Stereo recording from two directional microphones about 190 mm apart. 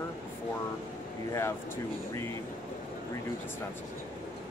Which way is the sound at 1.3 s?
15° left (ahead or behind).